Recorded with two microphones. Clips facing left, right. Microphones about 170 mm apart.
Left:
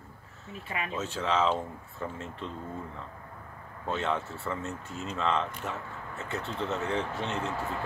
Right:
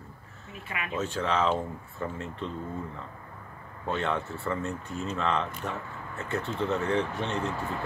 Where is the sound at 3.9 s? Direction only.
5° left (ahead or behind).